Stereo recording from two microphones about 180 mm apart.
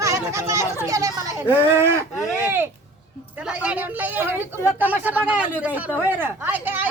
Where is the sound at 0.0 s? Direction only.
15° right (ahead or behind).